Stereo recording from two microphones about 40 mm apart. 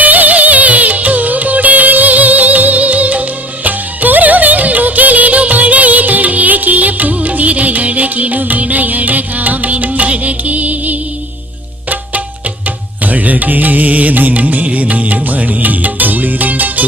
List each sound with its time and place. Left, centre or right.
0.0 s music: right
12.6 s music: right